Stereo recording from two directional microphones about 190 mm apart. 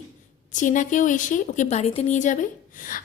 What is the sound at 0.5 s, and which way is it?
A woman's voice, 40° left (ahead or behind).